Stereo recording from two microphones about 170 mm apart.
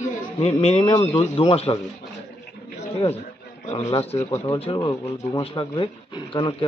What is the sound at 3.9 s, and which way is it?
Speech, 35° left (ahead or behind).